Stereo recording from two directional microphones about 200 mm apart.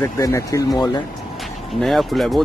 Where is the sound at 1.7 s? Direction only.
Centre (ahead or behind).